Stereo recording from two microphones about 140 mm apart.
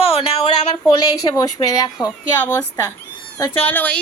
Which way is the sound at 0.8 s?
25° left (ahead or behind).